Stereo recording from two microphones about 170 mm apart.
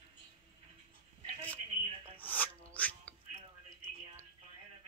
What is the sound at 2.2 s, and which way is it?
Music, 10° left (ahead or behind).